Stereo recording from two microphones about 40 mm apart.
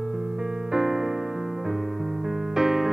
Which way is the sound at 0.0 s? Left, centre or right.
Centre.